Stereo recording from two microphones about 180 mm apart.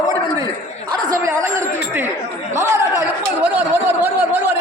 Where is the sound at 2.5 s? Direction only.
15° right (ahead or behind).